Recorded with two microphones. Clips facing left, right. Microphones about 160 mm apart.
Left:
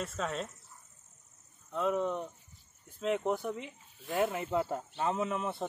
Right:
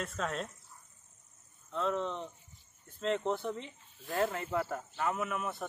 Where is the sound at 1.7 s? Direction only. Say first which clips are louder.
Left 3 dB; 10° left (ahead or behind).